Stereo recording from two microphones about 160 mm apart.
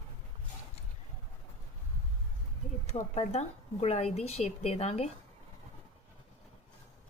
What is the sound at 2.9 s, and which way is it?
Speech, 45° left (ahead or behind).